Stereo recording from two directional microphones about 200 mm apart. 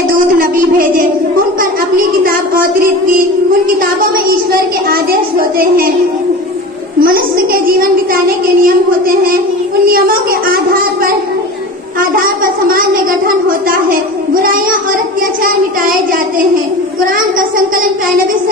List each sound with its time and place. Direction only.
1.6 s a sound: 45° right (ahead or behind)
4.5 s a sound: 50° right (ahead or behind)
7.0 s a child's voice: 45° right (ahead or behind)
9.8 s speech: 45° right (ahead or behind)
14.4 s a child's voice: 45° right (ahead or behind)
17.0 s a child's voice: 45° right (ahead or behind)